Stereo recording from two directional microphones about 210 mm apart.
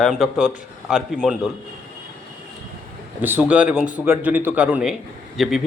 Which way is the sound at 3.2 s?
10° right (ahead or behind).